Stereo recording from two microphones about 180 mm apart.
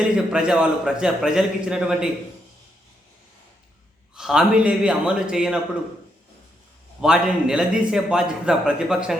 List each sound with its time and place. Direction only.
0.3 s a man's voice: 5° right (ahead or behind)
4.1 s a man's voice: 5° right (ahead or behind)
7.0 s a man's voice: 5° right (ahead or behind)